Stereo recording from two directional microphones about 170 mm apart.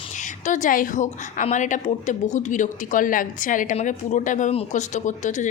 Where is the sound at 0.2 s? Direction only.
50° left (ahead or behind).